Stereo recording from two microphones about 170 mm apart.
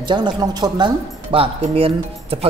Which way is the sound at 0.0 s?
25° right (ahead or behind).